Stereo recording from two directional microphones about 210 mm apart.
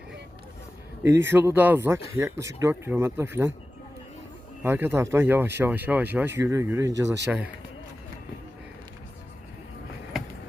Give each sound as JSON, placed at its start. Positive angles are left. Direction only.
{"t": 1.0, "sound": "speech", "side_deg": -10}
{"t": 4.6, "sound": "speech", "side_deg": -10}
{"t": 10.1, "sound": "a sound", "side_deg": 0}